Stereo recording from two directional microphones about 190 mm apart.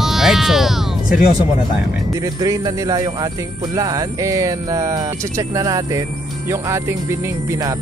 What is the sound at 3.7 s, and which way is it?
Music, 15° right (ahead or behind).